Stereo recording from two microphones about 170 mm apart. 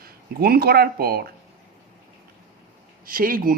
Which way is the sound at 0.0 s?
65° right (ahead or behind).